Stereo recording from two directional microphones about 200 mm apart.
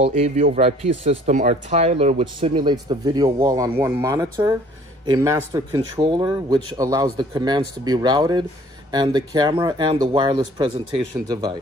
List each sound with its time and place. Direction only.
0.0 s speech: 30° right (ahead or behind)